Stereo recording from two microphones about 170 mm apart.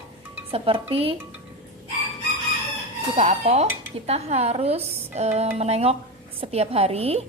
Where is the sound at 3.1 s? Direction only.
40° right (ahead or behind).